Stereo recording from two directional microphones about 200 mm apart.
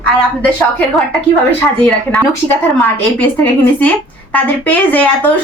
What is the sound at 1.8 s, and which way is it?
A woman's voice, 5° left (ahead or behind).